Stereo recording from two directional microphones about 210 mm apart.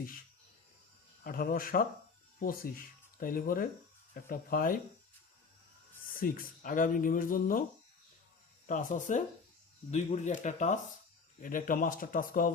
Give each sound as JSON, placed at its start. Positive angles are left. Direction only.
{"t": 1.2, "sound": "speech", "side_deg": 40}
{"t": 6.0, "sound": "speech", "side_deg": 40}
{"t": 8.6, "sound": "speech", "side_deg": 40}